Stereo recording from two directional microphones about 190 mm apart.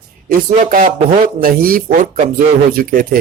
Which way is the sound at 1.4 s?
50° right (ahead or behind).